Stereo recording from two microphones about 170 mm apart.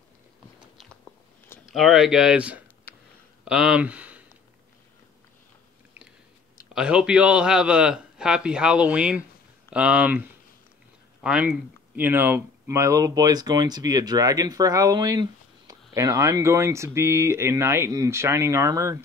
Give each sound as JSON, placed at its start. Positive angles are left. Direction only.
{"t": 1.7, "sound": "a man's voice", "side_deg": 0}
{"t": 2.9, "sound": "a sound", "side_deg": 15}
{"t": 3.4, "sound": "speech", "side_deg": -5}
{"t": 6.7, "sound": "a man's voice", "side_deg": -5}